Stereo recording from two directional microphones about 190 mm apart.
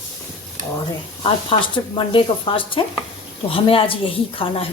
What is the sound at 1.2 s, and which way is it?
Speech, 25° left (ahead or behind).